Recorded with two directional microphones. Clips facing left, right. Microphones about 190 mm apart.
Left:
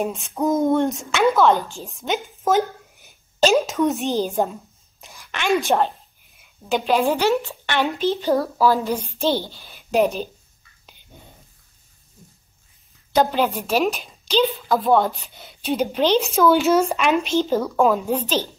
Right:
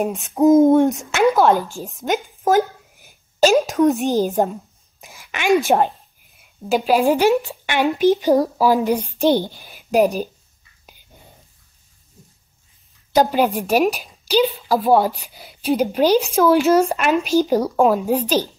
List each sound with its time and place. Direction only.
0.0 s speech: centre (ahead or behind)
0.3 s hoot: 20° right (ahead or behind)
0.8 s speech: centre (ahead or behind)
5.1 s a sound: 15° right (ahead or behind)
6.7 s a woman's voice: 5° right (ahead or behind)
9.8 s a woman's voice: centre (ahead or behind)
13.1 s a woman's voice: 10° right (ahead or behind)
17.7 s a woman's voice: 5° right (ahead or behind)